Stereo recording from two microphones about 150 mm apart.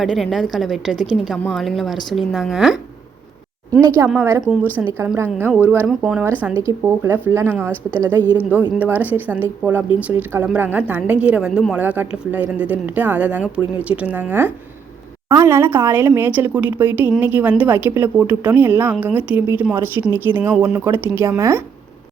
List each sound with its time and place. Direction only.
0.0 s a woman's voice: centre (ahead or behind)
3.8 s speech: 20° right (ahead or behind)
8.8 s speech: 10° right (ahead or behind)